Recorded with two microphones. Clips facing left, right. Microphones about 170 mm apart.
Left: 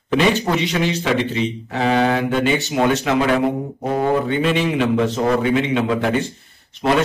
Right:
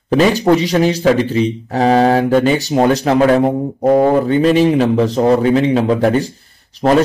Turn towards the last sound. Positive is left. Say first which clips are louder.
# right 5 dB
turn(degrees=-40)  # may be behind; listen again after turning